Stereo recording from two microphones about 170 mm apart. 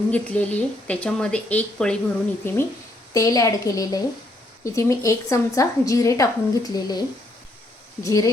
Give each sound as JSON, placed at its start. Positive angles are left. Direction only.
{"t": 0.1, "sound": "a woman's voice", "side_deg": 10}
{"t": 8.0, "sound": "a woman's voice", "side_deg": 20}